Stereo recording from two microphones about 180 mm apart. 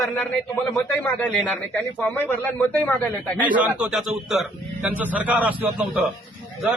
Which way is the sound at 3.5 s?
5° right (ahead or behind).